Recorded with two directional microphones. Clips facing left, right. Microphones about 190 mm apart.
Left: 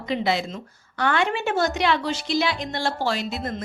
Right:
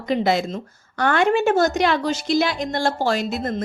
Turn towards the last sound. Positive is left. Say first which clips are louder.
# right 5 dB
turn(degrees=-45)  # may be behind; listen again after turning